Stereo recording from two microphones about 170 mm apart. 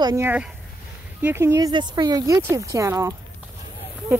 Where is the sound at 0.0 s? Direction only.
15° right (ahead or behind).